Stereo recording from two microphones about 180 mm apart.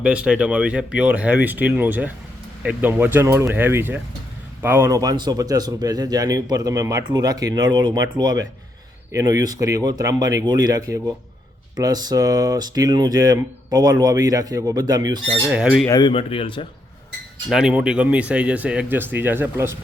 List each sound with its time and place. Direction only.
0.0 s speech: 5° right (ahead or behind)
15.4 s speech: 5° right (ahead or behind)
15.9 s speech: 25° left (ahead or behind)
17.5 s speech: 5° right (ahead or behind)